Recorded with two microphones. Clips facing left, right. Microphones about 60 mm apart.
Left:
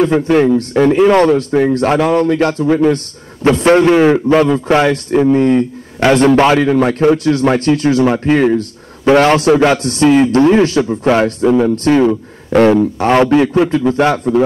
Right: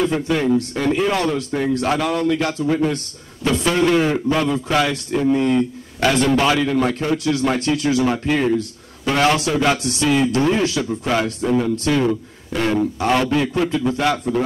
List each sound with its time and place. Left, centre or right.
0.0 s a man's voice: left